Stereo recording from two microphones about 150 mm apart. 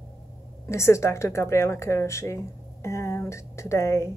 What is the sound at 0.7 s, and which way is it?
Speech, 20° left (ahead or behind).